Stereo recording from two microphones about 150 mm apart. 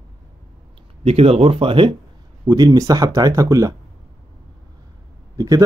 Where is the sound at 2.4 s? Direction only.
25° right (ahead or behind).